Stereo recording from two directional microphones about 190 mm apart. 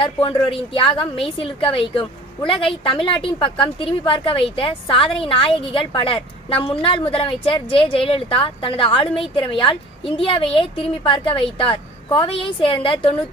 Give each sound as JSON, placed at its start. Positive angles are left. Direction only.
{"t": 0.0, "sound": "a woman's voice", "side_deg": 25}